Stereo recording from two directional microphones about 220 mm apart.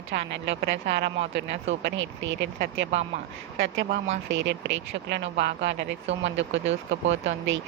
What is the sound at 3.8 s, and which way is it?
Speech, 45° right (ahead or behind).